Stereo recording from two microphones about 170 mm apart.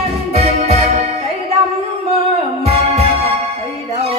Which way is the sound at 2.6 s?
35° right (ahead or behind).